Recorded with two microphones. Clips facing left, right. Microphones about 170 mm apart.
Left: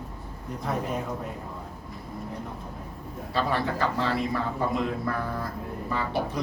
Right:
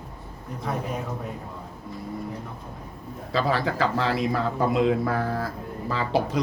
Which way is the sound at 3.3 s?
90° right.